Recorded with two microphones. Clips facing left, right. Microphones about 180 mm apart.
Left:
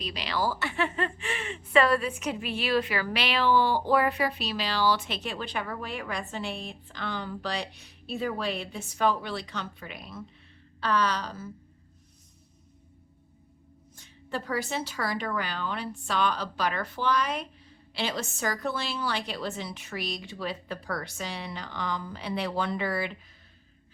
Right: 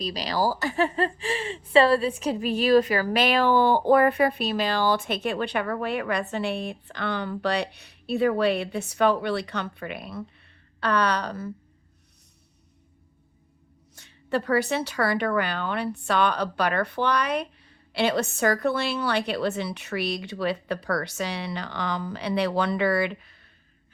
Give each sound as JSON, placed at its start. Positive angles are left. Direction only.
{"t": 0.0, "sound": "a woman's voice", "side_deg": -40}
{"t": 13.9, "sound": "a woman's voice", "side_deg": -65}